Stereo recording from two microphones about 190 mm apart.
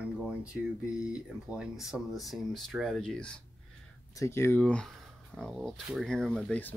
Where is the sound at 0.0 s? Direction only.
5° right (ahead or behind).